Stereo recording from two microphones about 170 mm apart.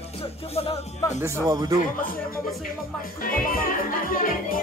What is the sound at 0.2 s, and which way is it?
Speech, 35° left (ahead or behind).